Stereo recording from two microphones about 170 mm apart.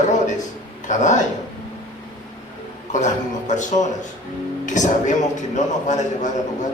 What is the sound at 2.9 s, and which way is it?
A man's voice, 45° left (ahead or behind).